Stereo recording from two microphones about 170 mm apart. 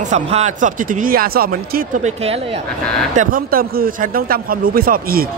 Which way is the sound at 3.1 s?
50° right (ahead or behind).